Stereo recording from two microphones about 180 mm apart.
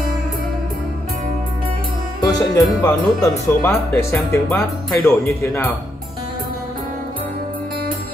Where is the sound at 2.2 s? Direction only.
20° left (ahead or behind).